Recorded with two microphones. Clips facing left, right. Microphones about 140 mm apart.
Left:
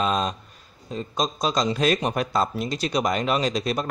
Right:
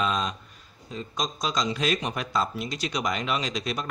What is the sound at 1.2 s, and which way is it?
Speech, 30° left (ahead or behind).